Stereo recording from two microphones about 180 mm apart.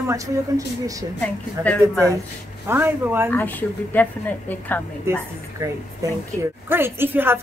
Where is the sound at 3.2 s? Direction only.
10° left (ahead or behind).